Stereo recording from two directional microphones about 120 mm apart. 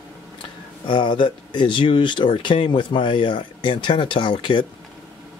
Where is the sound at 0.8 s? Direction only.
40° left (ahead or behind).